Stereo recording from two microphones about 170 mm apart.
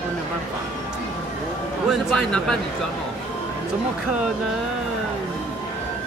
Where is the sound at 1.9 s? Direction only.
5° left (ahead or behind).